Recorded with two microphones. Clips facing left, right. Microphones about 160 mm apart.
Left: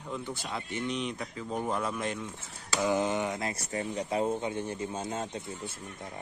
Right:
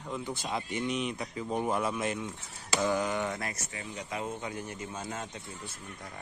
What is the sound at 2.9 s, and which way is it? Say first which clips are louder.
Speech: left 2 dB; 20° left (ahead or behind).